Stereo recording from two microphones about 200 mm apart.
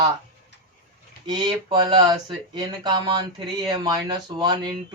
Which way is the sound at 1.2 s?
20° right (ahead or behind).